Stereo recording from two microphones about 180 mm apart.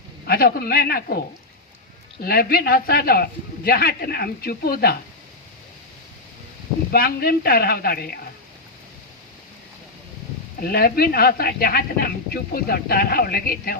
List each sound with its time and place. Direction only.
0.3 s speech: 55° left (ahead or behind)
2.2 s speech: 55° left (ahead or behind)
6.9 s speech: 55° left (ahead or behind)
10.6 s speech: 55° left (ahead or behind)